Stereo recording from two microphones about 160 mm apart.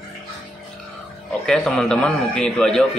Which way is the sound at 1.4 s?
5° left (ahead or behind).